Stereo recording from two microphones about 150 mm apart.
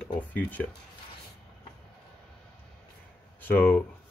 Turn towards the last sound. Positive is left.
turn(degrees=10)  # may be behind; listen again after turning